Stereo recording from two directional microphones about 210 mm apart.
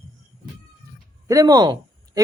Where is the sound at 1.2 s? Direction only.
15° right (ahead or behind).